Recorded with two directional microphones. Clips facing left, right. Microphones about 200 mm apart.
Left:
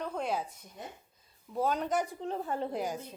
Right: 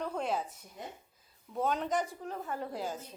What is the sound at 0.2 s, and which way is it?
A woman's voice, centre (ahead or behind).